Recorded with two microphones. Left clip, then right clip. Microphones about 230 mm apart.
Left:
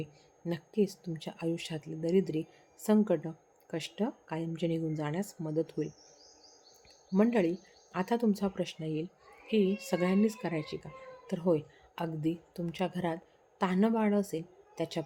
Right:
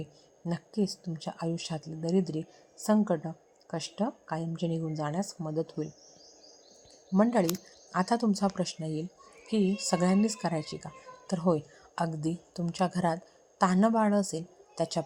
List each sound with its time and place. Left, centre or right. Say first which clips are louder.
0.4 s speech: left 2 dB; centre
7.1 s a woman's voice: right 2 dB; centre